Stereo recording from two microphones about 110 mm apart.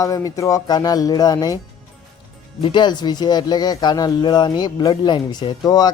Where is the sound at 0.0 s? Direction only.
30° left (ahead or behind).